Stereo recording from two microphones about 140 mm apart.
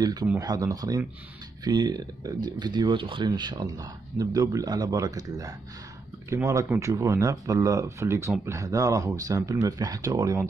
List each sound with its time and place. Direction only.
0.0 s speech: 30° right (ahead or behind)